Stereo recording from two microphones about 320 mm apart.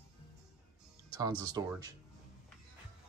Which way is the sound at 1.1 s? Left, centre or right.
Centre.